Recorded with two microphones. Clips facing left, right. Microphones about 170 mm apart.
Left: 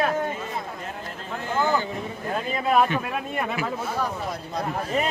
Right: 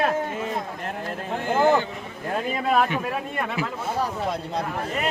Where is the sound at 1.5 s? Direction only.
60° right (ahead or behind).